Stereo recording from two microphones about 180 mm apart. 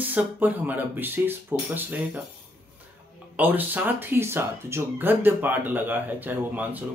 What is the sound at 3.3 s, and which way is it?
Speech, 10° right (ahead or behind).